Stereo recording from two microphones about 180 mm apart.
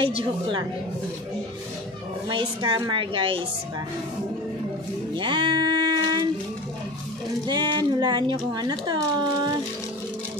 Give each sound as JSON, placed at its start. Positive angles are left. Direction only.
{"t": 0.1, "sound": "speech", "side_deg": -25}
{"t": 2.2, "sound": "speech", "side_deg": -25}
{"t": 5.1, "sound": "music", "side_deg": -25}
{"t": 7.4, "sound": "speech", "side_deg": -25}